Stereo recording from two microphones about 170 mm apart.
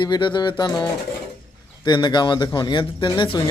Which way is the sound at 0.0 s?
25° left (ahead or behind).